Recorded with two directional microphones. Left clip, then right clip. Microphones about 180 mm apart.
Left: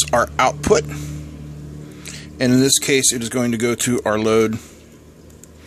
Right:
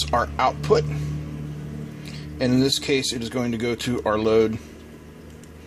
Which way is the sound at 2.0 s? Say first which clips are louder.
Left 5 dB; 30° left (ahead or behind).